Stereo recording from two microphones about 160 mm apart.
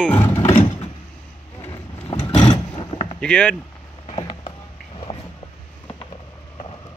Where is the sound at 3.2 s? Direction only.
10° left (ahead or behind).